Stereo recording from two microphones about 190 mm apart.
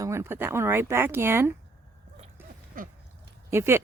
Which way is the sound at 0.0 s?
15° right (ahead or behind).